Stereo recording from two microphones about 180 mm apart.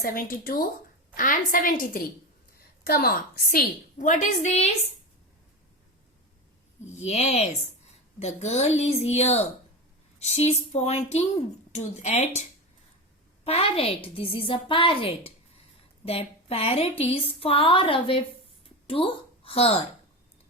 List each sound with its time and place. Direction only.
0.0 s a woman's voice: 50° left (ahead or behind)
7.0 s a woman's voice: 35° left (ahead or behind)
13.4 s a woman's voice: 35° left (ahead or behind)